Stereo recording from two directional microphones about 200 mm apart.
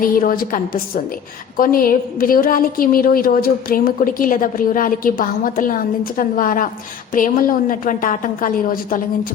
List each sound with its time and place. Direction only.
0.0 s a woman's voice: 45° left (ahead or behind)